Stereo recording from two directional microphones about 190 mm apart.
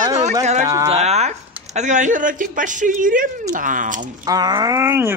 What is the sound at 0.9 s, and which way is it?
Speech, 35° right (ahead or behind).